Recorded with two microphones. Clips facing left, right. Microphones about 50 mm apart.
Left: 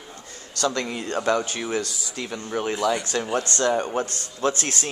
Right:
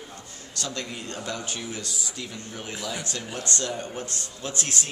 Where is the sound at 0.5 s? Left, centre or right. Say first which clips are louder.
Left 8 dB; left.